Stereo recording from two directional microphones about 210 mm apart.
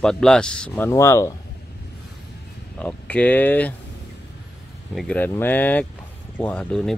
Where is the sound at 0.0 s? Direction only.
5° left (ahead or behind).